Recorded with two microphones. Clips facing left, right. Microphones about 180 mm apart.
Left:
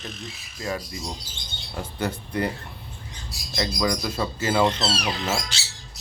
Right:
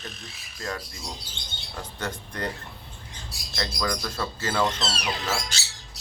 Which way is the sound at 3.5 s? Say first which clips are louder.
Left 4 dB; 10° left (ahead or behind).